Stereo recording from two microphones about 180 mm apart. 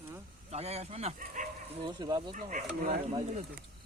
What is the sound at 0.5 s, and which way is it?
Speech, 35° right (ahead or behind).